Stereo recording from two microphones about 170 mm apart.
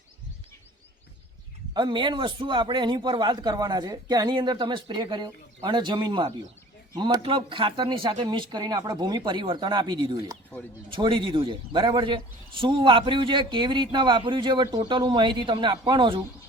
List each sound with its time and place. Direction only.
1.7 s a man's voice: 25° right (ahead or behind)